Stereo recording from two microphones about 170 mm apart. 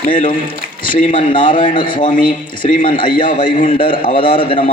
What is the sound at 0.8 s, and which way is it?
A man's voice, 30° left (ahead or behind).